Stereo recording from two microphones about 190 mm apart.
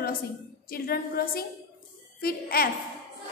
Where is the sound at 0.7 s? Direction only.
50° left (ahead or behind).